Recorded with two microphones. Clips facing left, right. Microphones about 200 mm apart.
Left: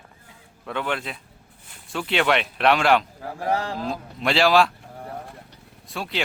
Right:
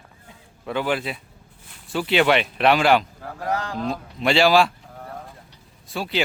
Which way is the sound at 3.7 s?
Centre (ahead or behind).